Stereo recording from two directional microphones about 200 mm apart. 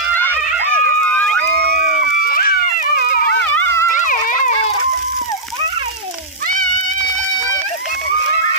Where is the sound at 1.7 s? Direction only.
40° left (ahead or behind).